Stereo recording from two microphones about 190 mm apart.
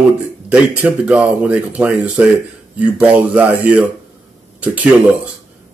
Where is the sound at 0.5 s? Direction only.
5° right (ahead or behind).